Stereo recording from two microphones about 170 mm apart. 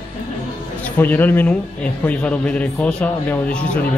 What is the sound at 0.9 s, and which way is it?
A man's voice, 10° left (ahead or behind).